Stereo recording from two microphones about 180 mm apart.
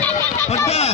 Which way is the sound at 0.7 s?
35° left (ahead or behind).